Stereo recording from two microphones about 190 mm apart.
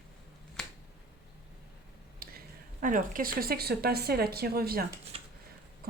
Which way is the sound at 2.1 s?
50° right (ahead or behind).